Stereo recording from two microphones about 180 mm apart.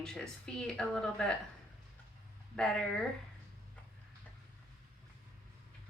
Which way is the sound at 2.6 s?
5° left (ahead or behind).